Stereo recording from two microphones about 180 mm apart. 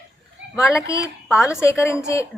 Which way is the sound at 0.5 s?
20° left (ahead or behind).